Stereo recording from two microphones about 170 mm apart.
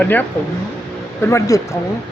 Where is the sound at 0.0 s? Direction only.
10° left (ahead or behind).